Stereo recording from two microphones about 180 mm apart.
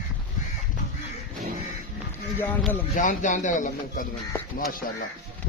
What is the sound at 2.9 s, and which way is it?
A man's voice, 45° left (ahead or behind).